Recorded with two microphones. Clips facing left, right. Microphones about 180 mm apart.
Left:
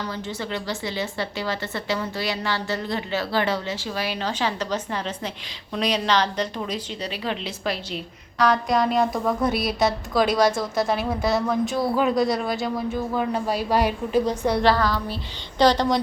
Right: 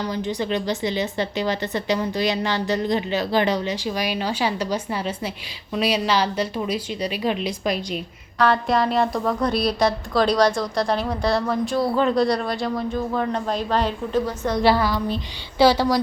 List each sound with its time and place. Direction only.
0.1 s a woman's voice: 15° right (ahead or behind)
8.4 s a woman's voice: centre (ahead or behind)
14.6 s a woman's voice: 10° right (ahead or behind)